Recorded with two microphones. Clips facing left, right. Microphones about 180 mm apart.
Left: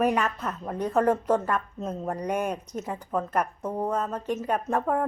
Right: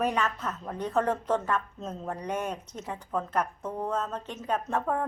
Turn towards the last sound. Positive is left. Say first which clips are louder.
# left 3 dB
turn(degrees=10)  # may be behind; listen again after turning